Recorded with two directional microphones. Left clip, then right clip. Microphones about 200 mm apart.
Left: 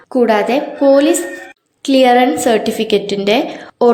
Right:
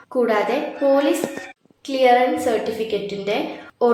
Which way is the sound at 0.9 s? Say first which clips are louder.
Left 7 dB; 30° left (ahead or behind).